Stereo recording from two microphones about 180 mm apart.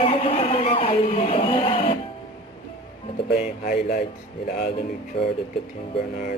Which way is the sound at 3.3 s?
40° left (ahead or behind).